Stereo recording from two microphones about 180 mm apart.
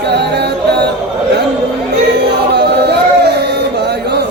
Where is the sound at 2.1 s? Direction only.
65° right (ahead or behind).